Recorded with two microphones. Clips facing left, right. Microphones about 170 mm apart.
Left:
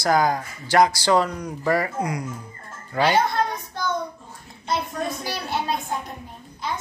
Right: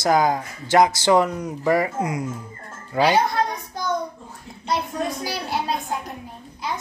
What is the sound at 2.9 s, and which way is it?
Speech, 10° right (ahead or behind).